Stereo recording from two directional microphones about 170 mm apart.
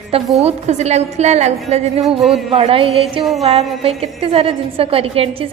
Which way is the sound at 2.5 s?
35° right (ahead or behind).